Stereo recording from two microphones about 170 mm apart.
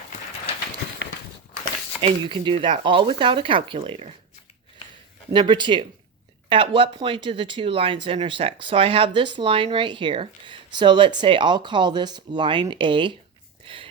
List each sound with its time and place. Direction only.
2.0 s speech: 30° right (ahead or behind)
5.3 s speech: 25° right (ahead or behind)
13.7 s a sound: 30° right (ahead or behind)